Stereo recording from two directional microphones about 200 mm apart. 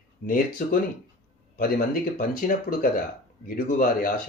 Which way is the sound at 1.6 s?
45° left (ahead or behind).